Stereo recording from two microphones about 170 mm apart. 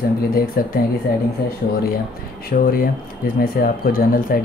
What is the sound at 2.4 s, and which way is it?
Speech, 60° left (ahead or behind).